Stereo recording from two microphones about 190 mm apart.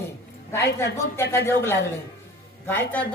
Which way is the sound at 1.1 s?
15° left (ahead or behind).